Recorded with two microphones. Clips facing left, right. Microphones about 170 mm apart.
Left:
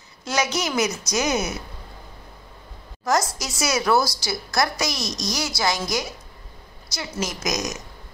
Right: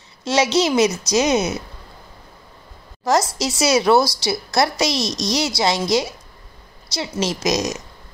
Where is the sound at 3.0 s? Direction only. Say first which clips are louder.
Right 4 dB; 25° right (ahead or behind).